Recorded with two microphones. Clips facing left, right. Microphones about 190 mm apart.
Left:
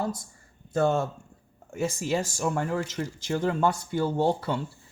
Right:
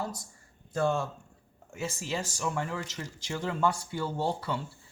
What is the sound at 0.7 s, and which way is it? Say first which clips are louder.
Speech: left 4 dB; 55° left (ahead or behind).